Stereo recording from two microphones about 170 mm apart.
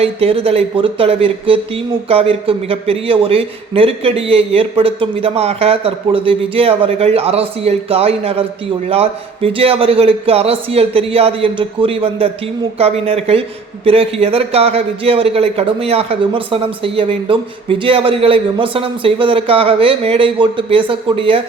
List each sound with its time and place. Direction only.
0.0 s speech: 35° right (ahead or behind)